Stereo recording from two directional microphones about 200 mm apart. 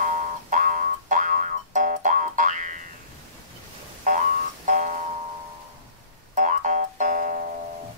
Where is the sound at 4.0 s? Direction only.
40° right (ahead or behind).